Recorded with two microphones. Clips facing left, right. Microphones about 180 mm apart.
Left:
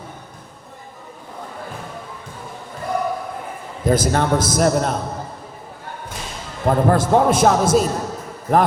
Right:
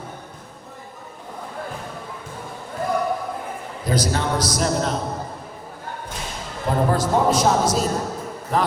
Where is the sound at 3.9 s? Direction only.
50° left (ahead or behind).